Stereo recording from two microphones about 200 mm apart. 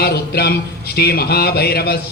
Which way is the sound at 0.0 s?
55° left (ahead or behind).